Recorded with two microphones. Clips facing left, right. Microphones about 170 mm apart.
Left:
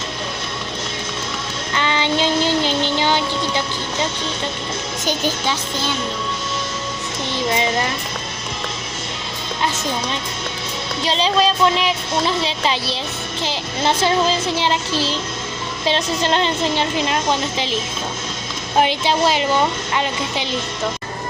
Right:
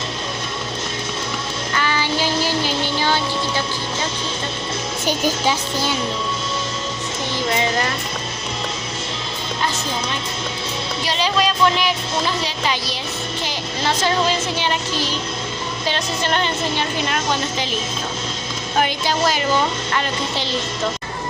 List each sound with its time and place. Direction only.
1.7 s child singing: 20° left (ahead or behind)
5.0 s a child's voice: 10° right (ahead or behind)
7.5 s music: 20° left (ahead or behind)
11.2 s music: 30° left (ahead or behind)
15.9 s music: 30° left (ahead or behind)
18.8 s music: 25° left (ahead or behind)